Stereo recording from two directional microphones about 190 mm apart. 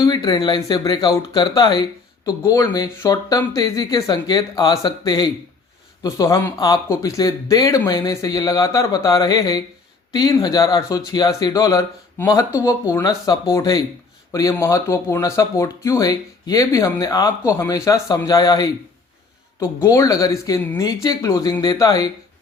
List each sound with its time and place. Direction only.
0.0 s speech: 25° left (ahead or behind)
19.8 s speech: 15° left (ahead or behind)